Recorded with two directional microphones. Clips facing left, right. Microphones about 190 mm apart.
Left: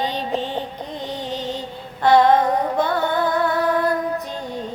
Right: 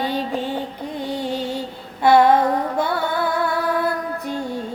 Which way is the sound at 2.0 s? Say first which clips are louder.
Right 1 dB; 10° right (ahead or behind).